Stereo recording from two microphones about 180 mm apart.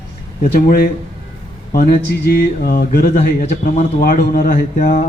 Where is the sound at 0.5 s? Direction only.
60° left (ahead or behind).